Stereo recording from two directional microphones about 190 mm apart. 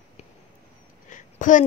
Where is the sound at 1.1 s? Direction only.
40° left (ahead or behind).